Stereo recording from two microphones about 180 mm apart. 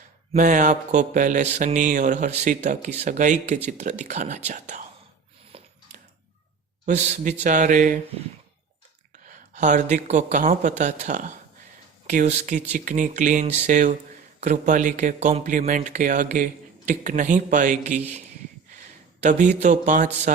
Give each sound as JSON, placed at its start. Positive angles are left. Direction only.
{"t": 0.3, "sound": "speech", "side_deg": -45}
{"t": 5.5, "sound": "a sound", "side_deg": -35}
{"t": 6.8, "sound": "speech", "side_deg": -40}
{"t": 9.3, "sound": "speech", "side_deg": -45}
{"t": 19.2, "sound": "speech", "side_deg": -40}